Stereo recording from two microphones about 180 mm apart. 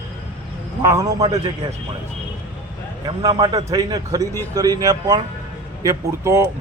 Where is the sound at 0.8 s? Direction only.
20° right (ahead or behind).